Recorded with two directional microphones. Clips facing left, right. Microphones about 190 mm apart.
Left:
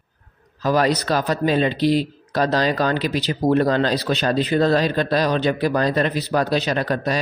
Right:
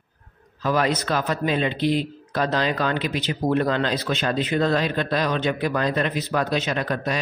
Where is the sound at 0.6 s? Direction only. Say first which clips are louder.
Left 3 dB; 35° left (ahead or behind).